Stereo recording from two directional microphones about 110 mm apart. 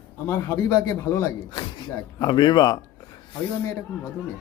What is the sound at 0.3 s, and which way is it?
Speech, 25° left (ahead or behind).